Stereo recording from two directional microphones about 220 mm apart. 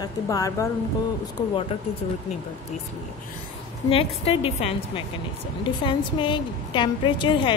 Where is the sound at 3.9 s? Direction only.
25° left (ahead or behind).